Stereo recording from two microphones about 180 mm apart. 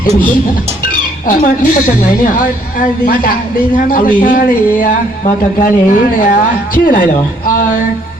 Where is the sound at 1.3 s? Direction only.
50° left (ahead or behind).